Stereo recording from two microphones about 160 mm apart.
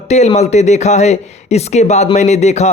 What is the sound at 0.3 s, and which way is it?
Speech, 45° left (ahead or behind).